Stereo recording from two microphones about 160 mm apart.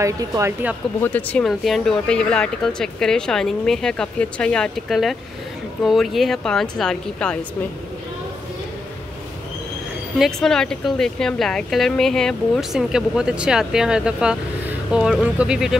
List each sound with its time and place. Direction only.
0.0 s speech: 20° right (ahead or behind)
1.0 s a woman's voice: 10° left (ahead or behind)
10.1 s a woman's voice: centre (ahead or behind)